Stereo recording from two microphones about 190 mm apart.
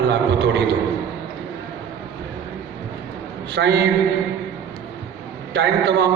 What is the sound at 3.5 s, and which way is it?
Speech, 65° right (ahead or behind).